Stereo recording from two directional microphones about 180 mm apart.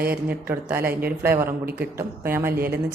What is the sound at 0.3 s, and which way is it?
A woman's voice, 10° right (ahead or behind).